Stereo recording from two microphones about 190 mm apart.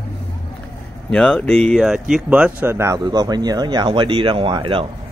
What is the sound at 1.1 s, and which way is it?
Speech, 5° left (ahead or behind).